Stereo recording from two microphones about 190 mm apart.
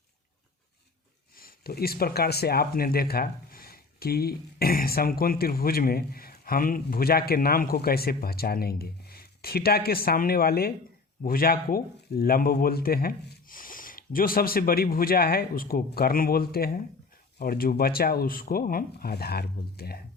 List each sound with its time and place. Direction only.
1.4 s speech: 50° left (ahead or behind)